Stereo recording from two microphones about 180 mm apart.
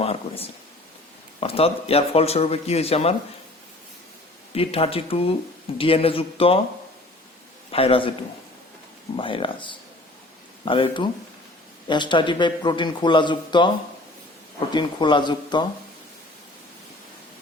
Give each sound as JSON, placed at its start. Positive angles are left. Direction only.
{"t": 0.0, "sound": "a sound", "side_deg": 35}
{"t": 1.4, "sound": "speech", "side_deg": 30}
{"t": 4.5, "sound": "speech", "side_deg": 30}
{"t": 7.7, "sound": "speech", "side_deg": 30}
{"t": 9.1, "sound": "a man's voice", "side_deg": 30}
{"t": 14.7, "sound": "a man's voice", "side_deg": 25}